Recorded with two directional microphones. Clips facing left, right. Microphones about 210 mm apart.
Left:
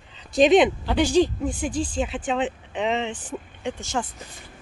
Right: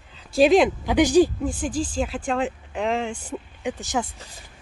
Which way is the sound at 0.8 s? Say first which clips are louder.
Right 3 dB; 10° right (ahead or behind).